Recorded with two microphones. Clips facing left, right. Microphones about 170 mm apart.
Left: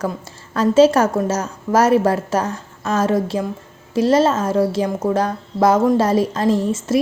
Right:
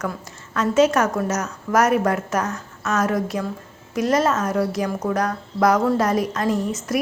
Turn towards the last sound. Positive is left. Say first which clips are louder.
# left 5 dB
turn(degrees=30)  # may be behind; listen again after turning